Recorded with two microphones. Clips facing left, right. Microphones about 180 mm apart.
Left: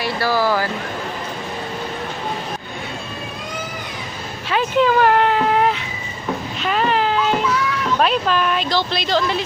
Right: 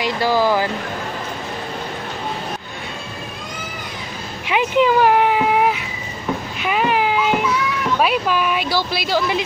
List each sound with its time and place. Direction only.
0.0 s speech: 15° right (ahead or behind)
4.5 s a sound: 15° right (ahead or behind)
8.0 s speech: 10° right (ahead or behind)